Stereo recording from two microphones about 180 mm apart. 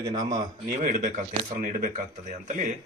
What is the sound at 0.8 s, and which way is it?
Speech, 45° right (ahead or behind).